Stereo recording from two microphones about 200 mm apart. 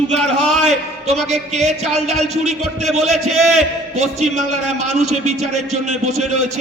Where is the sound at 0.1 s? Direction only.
35° right (ahead or behind).